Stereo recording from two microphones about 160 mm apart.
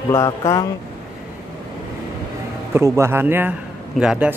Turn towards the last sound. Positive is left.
turn(degrees=-5)  # may be behind; listen again after turning